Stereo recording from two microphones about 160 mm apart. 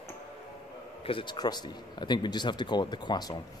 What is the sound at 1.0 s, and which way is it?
Speech, 30° left (ahead or behind).